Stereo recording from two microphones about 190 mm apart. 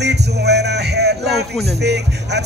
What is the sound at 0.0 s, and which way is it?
Music, 60° right (ahead or behind).